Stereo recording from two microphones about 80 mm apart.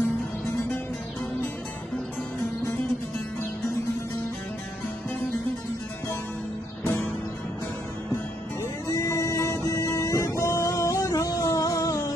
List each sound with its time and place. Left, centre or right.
6.8 s music: left
8.8 s music: left